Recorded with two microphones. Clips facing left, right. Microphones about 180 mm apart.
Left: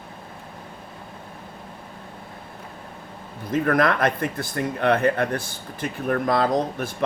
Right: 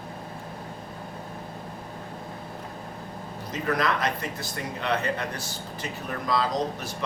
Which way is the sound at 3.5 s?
55° left (ahead or behind).